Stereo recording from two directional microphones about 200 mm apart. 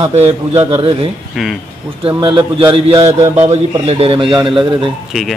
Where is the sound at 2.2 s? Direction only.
25° right (ahead or behind).